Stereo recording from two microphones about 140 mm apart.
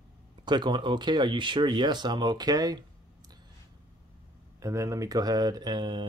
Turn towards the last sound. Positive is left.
turn(degrees=-35)  # may be behind; listen again after turning